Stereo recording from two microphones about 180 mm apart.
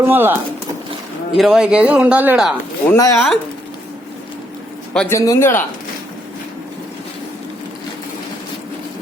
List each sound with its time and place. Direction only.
0.0 s speech: 10° right (ahead or behind)
1.4 s speech: 5° right (ahead or behind)
2.9 s speech: 15° left (ahead or behind)
4.9 s speech: 15° left (ahead or behind)